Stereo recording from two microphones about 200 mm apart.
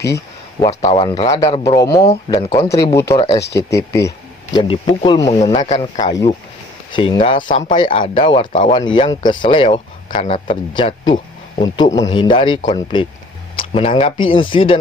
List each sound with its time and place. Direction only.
0.7 s speech: 35° left (ahead or behind)
1.0 s speech: 25° left (ahead or behind)
5.3 s speech: 30° left (ahead or behind)
6.1 s speech: 20° left (ahead or behind)
9.6 s speech: 40° left (ahead or behind)
10.8 s speech: 25° left (ahead or behind)